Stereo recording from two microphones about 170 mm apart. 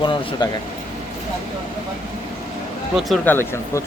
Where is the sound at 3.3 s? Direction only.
15° left (ahead or behind).